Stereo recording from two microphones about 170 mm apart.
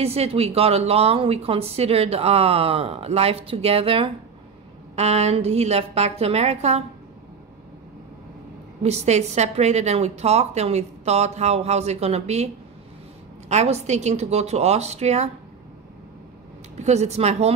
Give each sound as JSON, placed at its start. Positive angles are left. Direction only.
{"t": 0.0, "sound": "a woman's voice", "side_deg": -35}
{"t": 8.8, "sound": "a woman's voice", "side_deg": -40}
{"t": 13.5, "sound": "a woman's voice", "side_deg": -40}
{"t": 16.7, "sound": "a woman's voice", "side_deg": -40}